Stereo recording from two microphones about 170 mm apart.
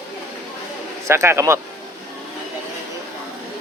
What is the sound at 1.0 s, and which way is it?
Speech, 15° right (ahead or behind).